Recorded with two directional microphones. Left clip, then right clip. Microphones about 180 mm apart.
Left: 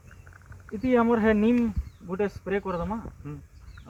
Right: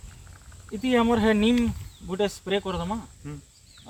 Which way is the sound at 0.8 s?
30° right (ahead or behind).